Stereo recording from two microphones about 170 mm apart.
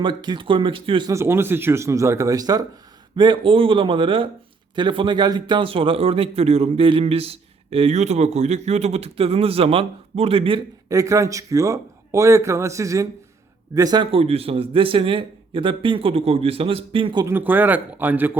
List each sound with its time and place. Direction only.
0.0 s speech: 25° right (ahead or behind)
1.1 s a man's voice: 15° right (ahead or behind); by 10.6 s 30° right (ahead or behind)
10.8 s a man's voice: 20° right (ahead or behind)
17.2 s speech: 10° right (ahead or behind)